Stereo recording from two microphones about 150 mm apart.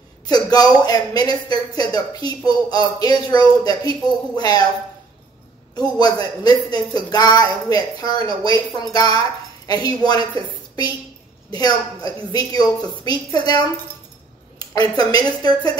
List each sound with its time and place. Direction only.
0.3 s speech: 25° left (ahead or behind)
5.8 s speech: 25° left (ahead or behind)
11.5 s speech: 25° left (ahead or behind)